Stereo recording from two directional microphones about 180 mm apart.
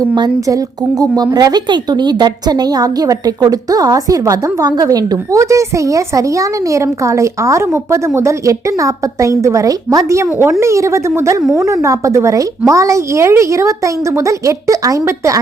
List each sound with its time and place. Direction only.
0.2 s a woman's voice: 20° right (ahead or behind)